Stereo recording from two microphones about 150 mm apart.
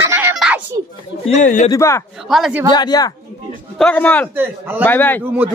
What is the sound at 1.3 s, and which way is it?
Speech, 55° left (ahead or behind).